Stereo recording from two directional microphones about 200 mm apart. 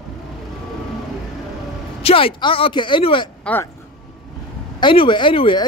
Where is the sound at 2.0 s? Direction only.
25° left (ahead or behind).